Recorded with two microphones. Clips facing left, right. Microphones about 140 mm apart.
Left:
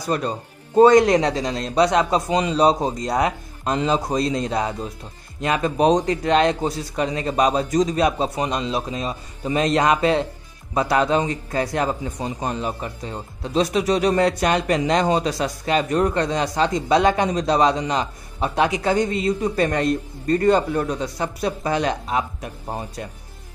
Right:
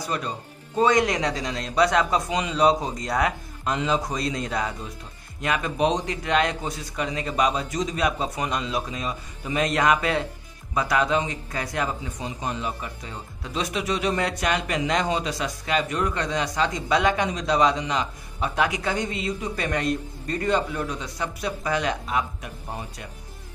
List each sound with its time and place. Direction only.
0.1 s a man's voice: 40° left (ahead or behind)
18.9 s a man's voice: 40° left (ahead or behind)